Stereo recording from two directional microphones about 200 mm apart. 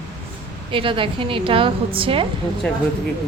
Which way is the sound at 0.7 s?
25° right (ahead or behind).